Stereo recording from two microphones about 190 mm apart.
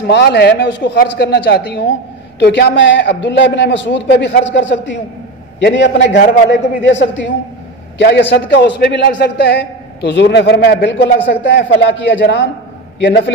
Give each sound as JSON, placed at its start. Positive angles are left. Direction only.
{"t": 0.0, "sound": "speech", "side_deg": 60}
{"t": 5.6, "sound": "a man's voice", "side_deg": 60}